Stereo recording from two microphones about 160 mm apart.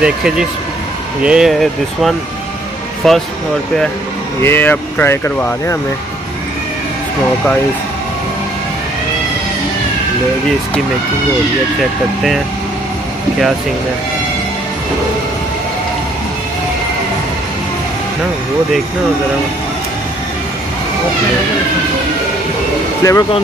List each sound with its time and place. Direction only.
0.0 s speech: 5° right (ahead or behind)
4.4 s speech: 15° left (ahead or behind)
23.0 s speech: 20° left (ahead or behind)